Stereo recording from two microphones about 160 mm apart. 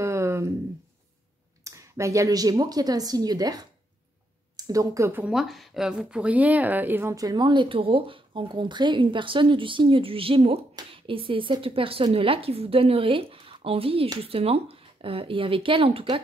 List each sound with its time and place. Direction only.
0.0 s a sound: 15° right (ahead or behind)
1.6 s speech: 20° right (ahead or behind)
5.2 s speech: centre (ahead or behind); by 16.2 s 35° right (ahead or behind)